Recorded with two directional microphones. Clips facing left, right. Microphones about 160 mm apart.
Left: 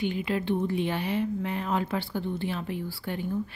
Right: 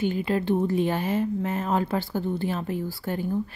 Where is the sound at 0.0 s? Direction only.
40° right (ahead or behind).